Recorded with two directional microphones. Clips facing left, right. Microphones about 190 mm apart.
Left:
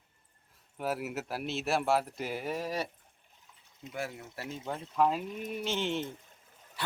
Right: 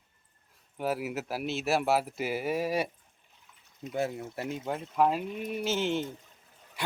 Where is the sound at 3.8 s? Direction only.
25° right (ahead or behind).